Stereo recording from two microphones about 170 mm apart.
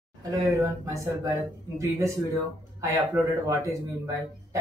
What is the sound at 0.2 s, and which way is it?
Speech, 15° right (ahead or behind).